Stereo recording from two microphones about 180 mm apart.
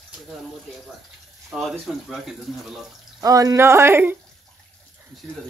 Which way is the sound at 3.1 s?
20° right (ahead or behind).